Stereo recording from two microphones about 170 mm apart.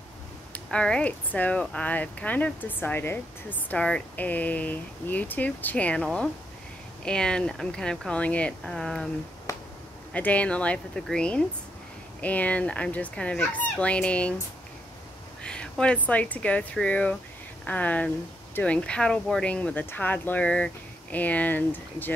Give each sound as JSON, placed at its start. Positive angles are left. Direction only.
{"t": 0.7, "sound": "speech", "side_deg": 5}
{"t": 9.5, "sound": "a sound", "side_deg": 20}
{"t": 10.1, "sound": "speech", "side_deg": 10}
{"t": 15.4, "sound": "speech", "side_deg": 5}